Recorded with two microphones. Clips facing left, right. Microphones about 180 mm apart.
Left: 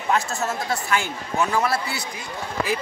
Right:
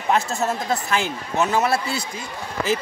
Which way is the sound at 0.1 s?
35° right (ahead or behind).